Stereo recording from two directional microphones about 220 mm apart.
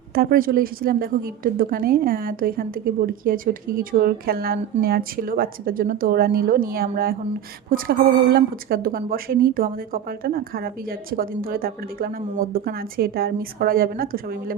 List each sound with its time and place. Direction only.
0.1 s a woman's voice: 40° right (ahead or behind)